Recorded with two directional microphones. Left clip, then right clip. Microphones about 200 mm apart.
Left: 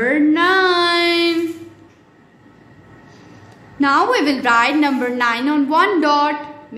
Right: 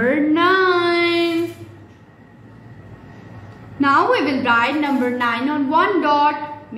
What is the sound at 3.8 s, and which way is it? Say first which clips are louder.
A woman's voice: left 1 dB; 55° left (ahead or behind).